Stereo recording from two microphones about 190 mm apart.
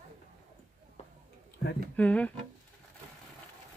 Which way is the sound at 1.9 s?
5° left (ahead or behind).